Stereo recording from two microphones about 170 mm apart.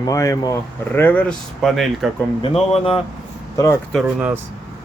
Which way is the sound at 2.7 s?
35° left (ahead or behind).